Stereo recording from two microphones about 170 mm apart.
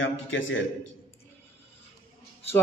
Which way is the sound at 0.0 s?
90° left.